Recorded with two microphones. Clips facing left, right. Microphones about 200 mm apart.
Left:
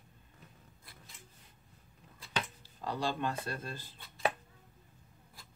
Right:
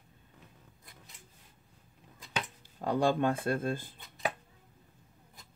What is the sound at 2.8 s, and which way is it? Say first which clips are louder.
Speech: right 7 dB; 55° right (ahead or behind).